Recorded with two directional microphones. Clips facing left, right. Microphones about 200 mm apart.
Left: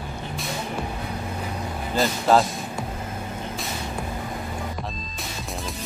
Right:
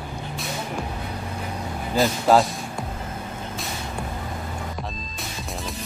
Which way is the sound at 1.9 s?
Centre (ahead or behind).